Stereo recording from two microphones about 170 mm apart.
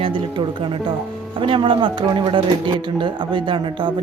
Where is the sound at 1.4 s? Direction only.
30° right (ahead or behind).